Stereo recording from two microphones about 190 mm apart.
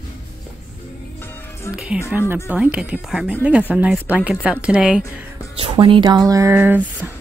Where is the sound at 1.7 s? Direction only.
5° right (ahead or behind).